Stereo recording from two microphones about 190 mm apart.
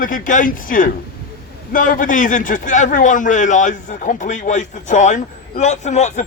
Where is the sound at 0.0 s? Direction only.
45° left (ahead or behind).